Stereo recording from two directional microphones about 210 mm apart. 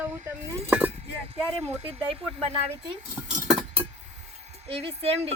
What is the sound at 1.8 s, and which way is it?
Speech, 25° right (ahead or behind).